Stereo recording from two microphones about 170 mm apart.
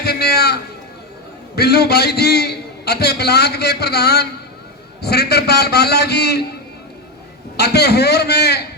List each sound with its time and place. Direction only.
0.0 s a man's voice: 70° left (ahead or behind)
7.5 s a man's voice: 70° left (ahead or behind)